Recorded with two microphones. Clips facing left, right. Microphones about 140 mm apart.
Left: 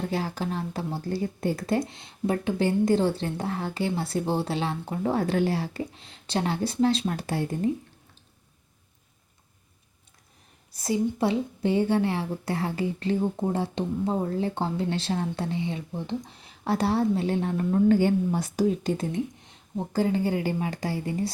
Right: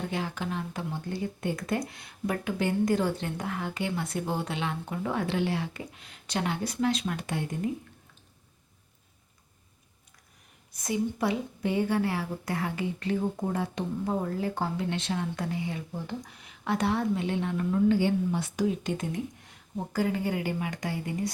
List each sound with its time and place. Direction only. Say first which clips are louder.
0.1 s a woman's voice: left 3 dB; 35° left (ahead or behind)
10.8 s a woman's voice: left 4 dB; 30° left (ahead or behind)
19.4 s a woman's voice: left 3 dB; 20° left (ahead or behind)